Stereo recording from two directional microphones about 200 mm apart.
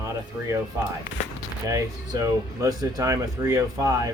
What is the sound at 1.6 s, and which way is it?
Speech, 20° right (ahead or behind).